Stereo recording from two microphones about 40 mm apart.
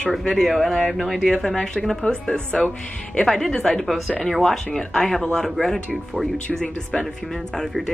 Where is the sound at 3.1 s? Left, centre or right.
Centre.